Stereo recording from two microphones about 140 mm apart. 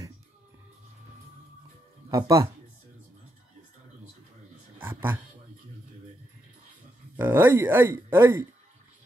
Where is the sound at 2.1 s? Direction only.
25° right (ahead or behind).